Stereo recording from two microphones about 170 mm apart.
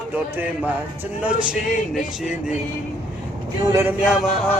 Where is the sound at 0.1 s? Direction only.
10° right (ahead or behind).